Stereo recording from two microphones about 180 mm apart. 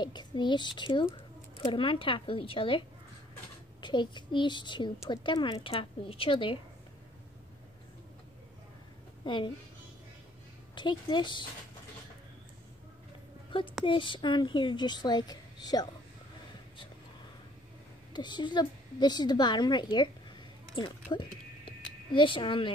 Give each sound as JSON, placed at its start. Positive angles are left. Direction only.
{"t": 0.0, "sound": "speech", "side_deg": 25}
{"t": 3.8, "sound": "speech", "side_deg": 25}
{"t": 9.2, "sound": "speech", "side_deg": 25}
{"t": 10.7, "sound": "a woman's voice", "side_deg": 25}
{"t": 13.5, "sound": "speech", "side_deg": 25}
{"t": 18.1, "sound": "speech", "side_deg": 25}
{"t": 20.7, "sound": "a sound", "side_deg": 25}
{"t": 22.1, "sound": "speech", "side_deg": 25}